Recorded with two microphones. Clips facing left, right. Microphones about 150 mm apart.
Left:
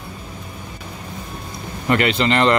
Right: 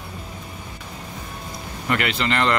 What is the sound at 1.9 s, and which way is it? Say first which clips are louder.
Speech: left 6 dB; 25° left (ahead or behind).